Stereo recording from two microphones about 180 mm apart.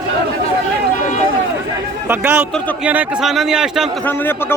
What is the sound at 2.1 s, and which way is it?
A man's voice, 15° right (ahead or behind).